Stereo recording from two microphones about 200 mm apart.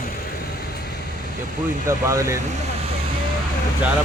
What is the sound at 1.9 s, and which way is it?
Speech, 15° right (ahead or behind).